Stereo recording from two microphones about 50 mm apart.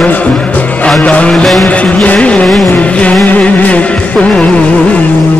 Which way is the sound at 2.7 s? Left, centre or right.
Left.